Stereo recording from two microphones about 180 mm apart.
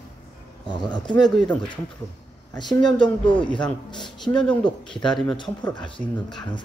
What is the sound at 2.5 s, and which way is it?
Speech, 25° left (ahead or behind).